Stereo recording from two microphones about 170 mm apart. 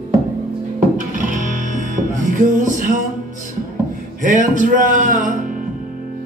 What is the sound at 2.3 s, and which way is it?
Music, 50° right (ahead or behind).